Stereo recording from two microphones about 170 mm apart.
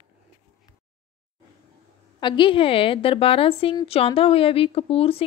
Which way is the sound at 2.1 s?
30° left (ahead or behind).